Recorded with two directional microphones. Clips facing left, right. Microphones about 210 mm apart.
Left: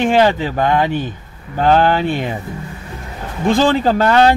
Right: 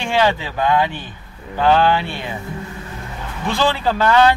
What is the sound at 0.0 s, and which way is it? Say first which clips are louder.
Speech: left 5 dB; 45° left (ahead or behind).